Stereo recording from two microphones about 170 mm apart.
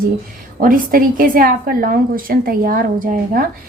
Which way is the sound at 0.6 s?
55° right (ahead or behind).